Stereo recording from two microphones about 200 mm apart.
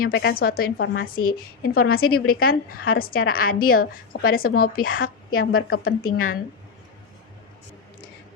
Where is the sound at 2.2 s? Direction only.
90° left.